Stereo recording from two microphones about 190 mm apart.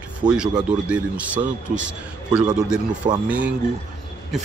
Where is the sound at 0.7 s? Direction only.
5° right (ahead or behind).